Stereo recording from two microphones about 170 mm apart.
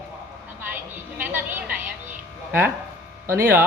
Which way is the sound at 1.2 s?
15° right (ahead or behind).